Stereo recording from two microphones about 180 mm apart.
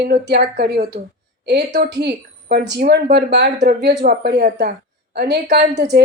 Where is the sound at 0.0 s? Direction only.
65° right (ahead or behind).